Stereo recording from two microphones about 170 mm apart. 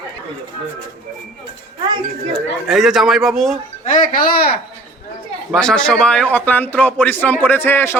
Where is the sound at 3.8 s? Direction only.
50° left (ahead or behind).